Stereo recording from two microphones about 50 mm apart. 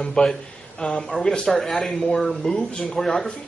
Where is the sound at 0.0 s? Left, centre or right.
Centre.